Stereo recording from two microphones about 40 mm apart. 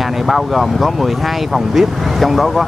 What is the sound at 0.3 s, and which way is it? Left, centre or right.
Speech, centre.